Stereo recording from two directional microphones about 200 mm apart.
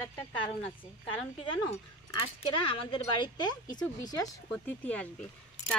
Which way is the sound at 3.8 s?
10° left (ahead or behind).